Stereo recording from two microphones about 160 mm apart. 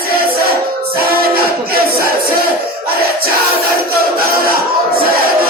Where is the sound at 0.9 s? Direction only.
70° right (ahead or behind).